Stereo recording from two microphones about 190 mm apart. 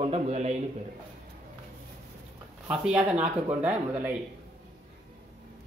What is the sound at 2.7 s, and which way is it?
Speech, 5° right (ahead or behind).